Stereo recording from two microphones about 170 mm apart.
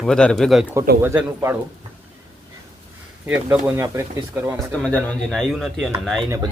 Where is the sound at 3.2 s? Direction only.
10° right (ahead or behind).